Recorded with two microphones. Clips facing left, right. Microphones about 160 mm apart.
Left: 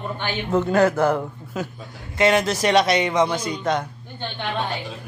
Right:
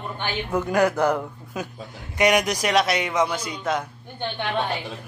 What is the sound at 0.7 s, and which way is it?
A man's voice, 15° right (ahead or behind).